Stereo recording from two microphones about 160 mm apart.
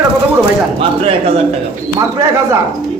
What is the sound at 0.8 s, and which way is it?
Speech, 35° right (ahead or behind).